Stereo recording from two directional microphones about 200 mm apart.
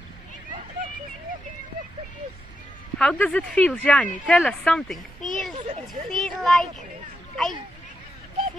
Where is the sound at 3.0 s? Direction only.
5° left (ahead or behind).